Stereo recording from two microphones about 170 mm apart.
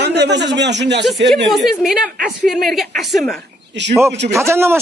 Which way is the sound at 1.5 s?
Centre (ahead or behind).